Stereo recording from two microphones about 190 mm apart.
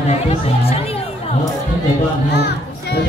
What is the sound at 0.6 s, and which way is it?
Speech, 30° left (ahead or behind).